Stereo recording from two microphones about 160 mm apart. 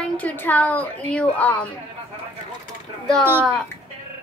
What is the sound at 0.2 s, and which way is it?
A woman's voice, 10° left (ahead or behind).